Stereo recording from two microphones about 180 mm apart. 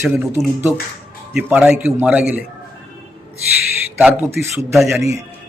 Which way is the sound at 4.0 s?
10° right (ahead or behind).